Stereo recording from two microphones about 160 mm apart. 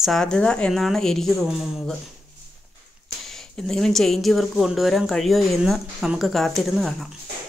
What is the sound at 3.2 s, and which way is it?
Speech, 5° left (ahead or behind).